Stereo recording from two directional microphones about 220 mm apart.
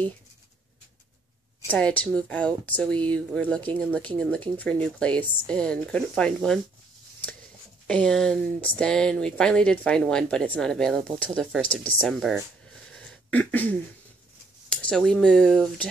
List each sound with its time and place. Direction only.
1.7 s speech: 5° left (ahead or behind)
7.8 s speech: 5° left (ahead or behind)
13.3 s a sound: 5° left (ahead or behind)
14.7 s speech: 5° left (ahead or behind)